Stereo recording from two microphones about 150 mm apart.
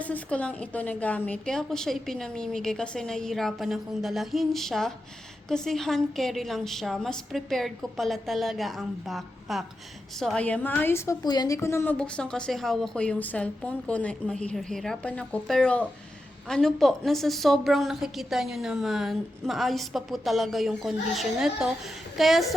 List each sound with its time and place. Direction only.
0.0 s a woman's voice: 10° left (ahead or behind)
11.9 s a woman's voice: 5° left (ahead or behind)